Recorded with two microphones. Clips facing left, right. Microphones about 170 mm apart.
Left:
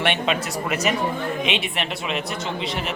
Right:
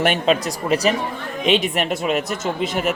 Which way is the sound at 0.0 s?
40° right (ahead or behind).